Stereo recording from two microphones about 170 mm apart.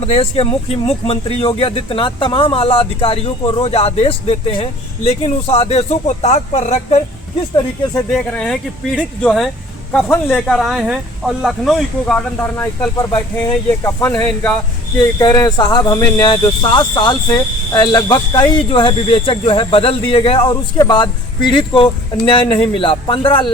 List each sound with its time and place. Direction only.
0.0 s speech: 35° left (ahead or behind)
8.1 s speech: 5° left (ahead or behind)
15.2 s speech: 20° left (ahead or behind)